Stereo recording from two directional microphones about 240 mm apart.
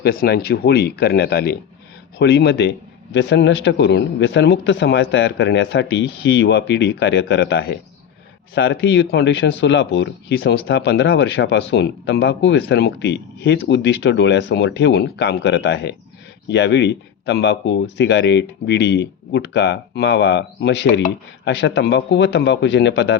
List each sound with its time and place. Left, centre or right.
0.0 s speech: left